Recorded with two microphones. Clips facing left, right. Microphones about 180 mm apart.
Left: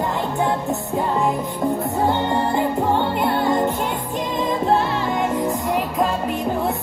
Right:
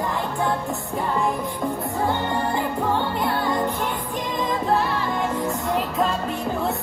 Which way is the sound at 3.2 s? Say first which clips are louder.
Left 4 dB; 25° left (ahead or behind).